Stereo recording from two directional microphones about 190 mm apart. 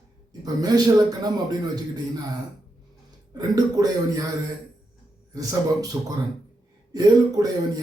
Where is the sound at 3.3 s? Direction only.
20° right (ahead or behind).